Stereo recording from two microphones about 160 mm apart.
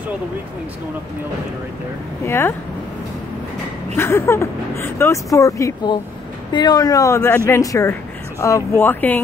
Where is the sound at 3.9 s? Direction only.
15° left (ahead or behind).